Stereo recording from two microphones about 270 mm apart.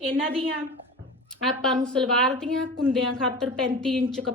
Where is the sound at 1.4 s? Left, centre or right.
Centre.